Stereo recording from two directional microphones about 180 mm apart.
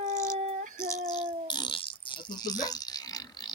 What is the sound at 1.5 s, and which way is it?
Pig, 25° left (ahead or behind).